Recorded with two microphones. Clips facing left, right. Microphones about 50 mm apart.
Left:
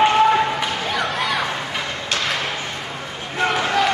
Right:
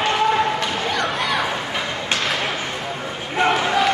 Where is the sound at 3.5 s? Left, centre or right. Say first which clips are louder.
Even; centre.